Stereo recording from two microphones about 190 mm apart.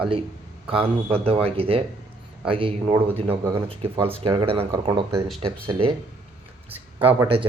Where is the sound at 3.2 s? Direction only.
15° right (ahead or behind).